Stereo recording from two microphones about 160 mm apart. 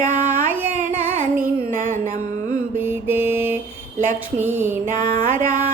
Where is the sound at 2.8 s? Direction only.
15° right (ahead or behind).